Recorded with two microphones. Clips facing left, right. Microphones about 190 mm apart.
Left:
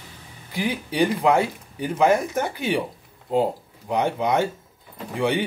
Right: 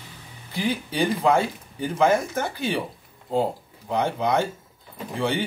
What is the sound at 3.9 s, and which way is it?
Speech, 15° left (ahead or behind).